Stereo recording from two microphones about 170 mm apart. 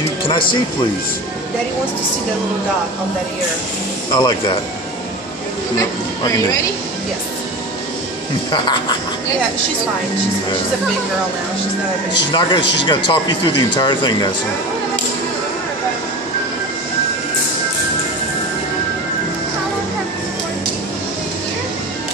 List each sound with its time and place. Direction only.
0.3 s speech: 30° left (ahead or behind)
4.1 s speech: 25° left (ahead or behind)
5.8 s speech: 20° left (ahead or behind)
8.5 s speech: 25° left (ahead or behind)
12.3 s speech: 30° left (ahead or behind)